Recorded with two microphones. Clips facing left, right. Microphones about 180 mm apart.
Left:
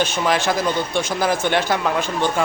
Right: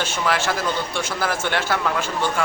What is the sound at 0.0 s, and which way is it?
A man's voice, 15° left (ahead or behind).